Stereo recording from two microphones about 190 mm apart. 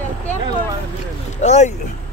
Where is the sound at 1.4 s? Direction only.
35° left (ahead or behind).